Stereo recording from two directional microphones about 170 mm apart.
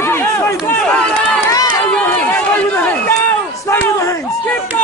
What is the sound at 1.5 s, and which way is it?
Run, 20° left (ahead or behind).